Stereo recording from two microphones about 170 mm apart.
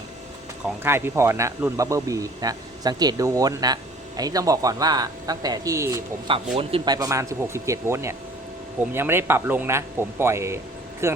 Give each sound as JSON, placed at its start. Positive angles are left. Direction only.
{"t": 0.8, "sound": "speech", "side_deg": -15}
{"t": 6.5, "sound": "speech", "side_deg": -35}